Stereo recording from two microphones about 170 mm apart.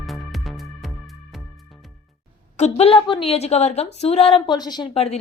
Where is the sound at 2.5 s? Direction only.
40° left (ahead or behind).